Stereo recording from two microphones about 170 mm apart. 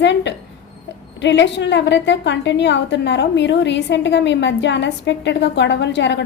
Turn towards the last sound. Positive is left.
turn(degrees=90)